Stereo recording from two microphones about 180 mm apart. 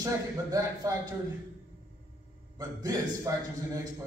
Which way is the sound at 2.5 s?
20° right (ahead or behind).